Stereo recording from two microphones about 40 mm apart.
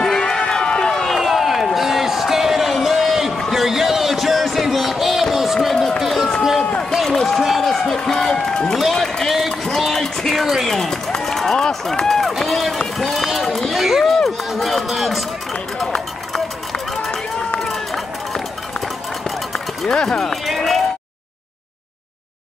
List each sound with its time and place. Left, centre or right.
0.0 s crowd: centre
1.1 s a sound: centre
5.9 s run: centre
9.8 s music: centre
10.6 s run: centre
11.6 s speech: centre
12.1 s run: centre
17.6 s run: centre
19.9 s speech: centre
20.4 s speech: centre